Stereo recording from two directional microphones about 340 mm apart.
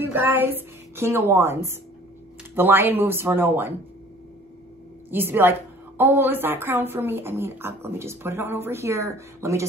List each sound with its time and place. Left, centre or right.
0.0 s a woman's voice: centre
5.1 s a woman's voice: centre